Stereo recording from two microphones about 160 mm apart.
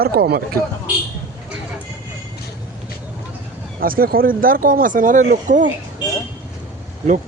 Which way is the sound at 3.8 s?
65° right (ahead or behind).